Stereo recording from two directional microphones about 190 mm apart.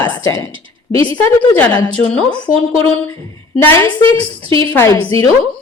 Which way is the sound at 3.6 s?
10° left (ahead or behind).